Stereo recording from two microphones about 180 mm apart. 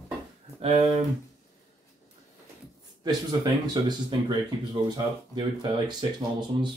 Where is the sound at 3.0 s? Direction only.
20° right (ahead or behind).